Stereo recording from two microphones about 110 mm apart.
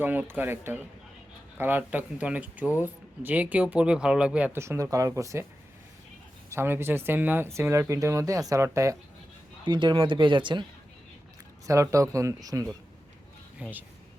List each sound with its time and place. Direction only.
0.0 s speech: 15° right (ahead or behind)
4.5 s speech: 25° right (ahead or behind)
6.5 s speech: 20° right (ahead or behind)
9.6 s speech: 45° right (ahead or behind)
11.6 s speech: 30° right (ahead or behind)
13.6 s speech: 15° right (ahead or behind)